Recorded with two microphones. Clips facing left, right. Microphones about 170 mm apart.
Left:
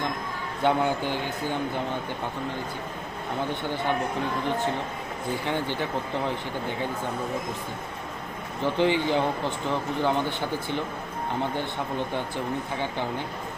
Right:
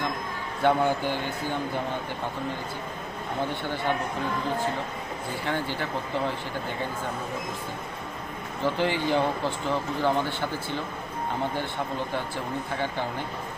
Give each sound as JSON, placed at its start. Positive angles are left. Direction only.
{"t": 0.6, "sound": "speech", "side_deg": 15}
{"t": 5.5, "sound": "speech", "side_deg": 15}
{"t": 8.6, "sound": "speech", "side_deg": 20}